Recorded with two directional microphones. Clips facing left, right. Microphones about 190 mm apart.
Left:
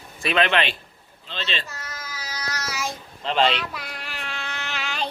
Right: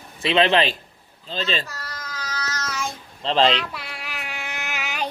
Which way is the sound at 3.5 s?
Centre (ahead or behind).